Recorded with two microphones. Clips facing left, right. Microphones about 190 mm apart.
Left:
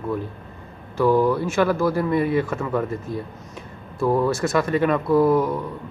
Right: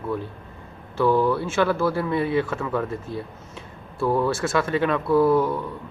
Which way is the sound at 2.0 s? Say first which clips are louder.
Left 2 dB; centre (ahead or behind).